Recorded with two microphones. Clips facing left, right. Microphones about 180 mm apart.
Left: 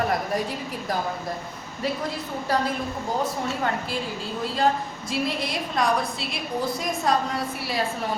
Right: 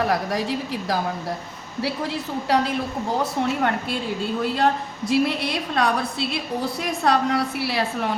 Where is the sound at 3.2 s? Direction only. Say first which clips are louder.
Right 5 dB; 65° right (ahead or behind).